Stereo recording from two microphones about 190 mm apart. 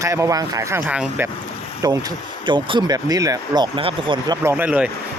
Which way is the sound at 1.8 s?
20° right (ahead or behind).